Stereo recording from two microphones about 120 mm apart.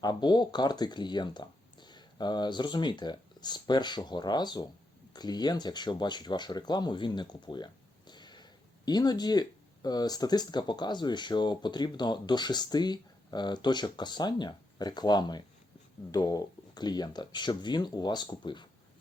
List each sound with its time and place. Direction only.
0.0 s speech: 35° left (ahead or behind)